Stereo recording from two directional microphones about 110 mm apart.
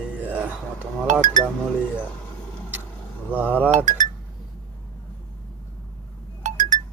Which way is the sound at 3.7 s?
90° right.